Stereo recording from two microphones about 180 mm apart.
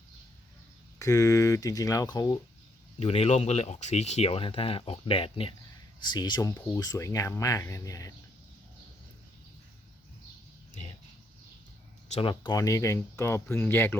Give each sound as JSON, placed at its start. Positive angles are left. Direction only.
{"t": 0.9, "sound": "speech", "side_deg": 20}
{"t": 3.0, "sound": "speech", "side_deg": 35}
{"t": 12.1, "sound": "speech", "side_deg": 30}